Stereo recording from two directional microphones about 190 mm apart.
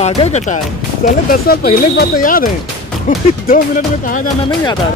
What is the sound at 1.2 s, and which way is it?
Speech, 55° left (ahead or behind).